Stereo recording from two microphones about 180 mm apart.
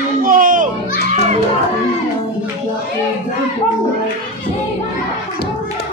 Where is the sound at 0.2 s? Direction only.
50° right (ahead or behind).